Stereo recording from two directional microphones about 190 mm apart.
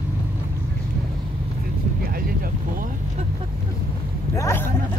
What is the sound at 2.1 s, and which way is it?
Vehicle, 50° right (ahead or behind).